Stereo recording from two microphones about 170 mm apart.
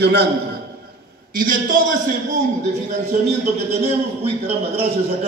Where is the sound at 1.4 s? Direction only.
55° right (ahead or behind).